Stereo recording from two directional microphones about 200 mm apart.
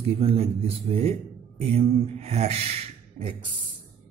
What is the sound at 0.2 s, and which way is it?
Speech, 30° right (ahead or behind).